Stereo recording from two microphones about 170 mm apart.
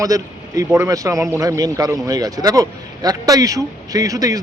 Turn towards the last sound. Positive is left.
turn(degrees=-20)  # may be behind; listen again after turning